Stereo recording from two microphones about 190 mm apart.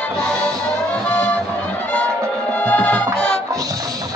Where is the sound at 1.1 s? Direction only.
5° left (ahead or behind).